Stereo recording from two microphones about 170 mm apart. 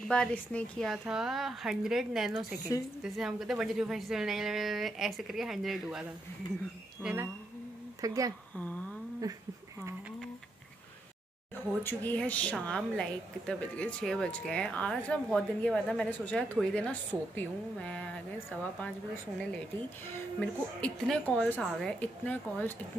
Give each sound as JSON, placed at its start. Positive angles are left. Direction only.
{"t": 0.1, "sound": "a woman's voice", "side_deg": 5}
{"t": 7.0, "sound": "a sound", "side_deg": -5}
{"t": 8.0, "sound": "speech", "side_deg": -20}
{"t": 8.5, "sound": "humming", "side_deg": 10}
{"t": 11.8, "sound": "a woman's voice", "side_deg": 10}